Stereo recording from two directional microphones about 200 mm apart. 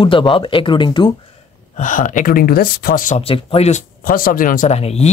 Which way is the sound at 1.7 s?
40° left (ahead or behind).